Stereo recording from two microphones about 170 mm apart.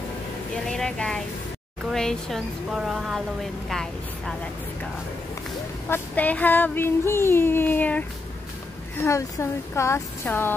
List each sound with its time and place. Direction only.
0.7 s speech: 5° left (ahead or behind)
5.9 s child singing: 10° left (ahead or behind)
9.0 s child singing: 15° left (ahead or behind)